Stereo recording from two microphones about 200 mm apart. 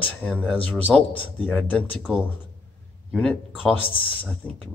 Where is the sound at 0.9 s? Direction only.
Centre (ahead or behind).